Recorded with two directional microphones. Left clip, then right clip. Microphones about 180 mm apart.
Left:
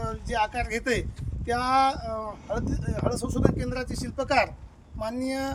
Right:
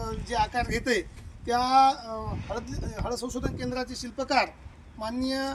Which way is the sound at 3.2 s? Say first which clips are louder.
Left 6 dB; 40° left (ahead or behind).